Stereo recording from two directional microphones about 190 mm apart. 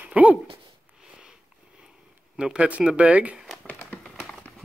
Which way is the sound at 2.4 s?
5° right (ahead or behind).